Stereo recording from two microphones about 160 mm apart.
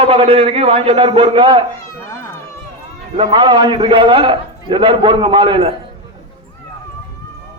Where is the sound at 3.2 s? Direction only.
30° right (ahead or behind).